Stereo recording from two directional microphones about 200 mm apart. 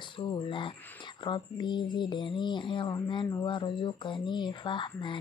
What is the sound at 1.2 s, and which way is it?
Speech, 25° left (ahead or behind).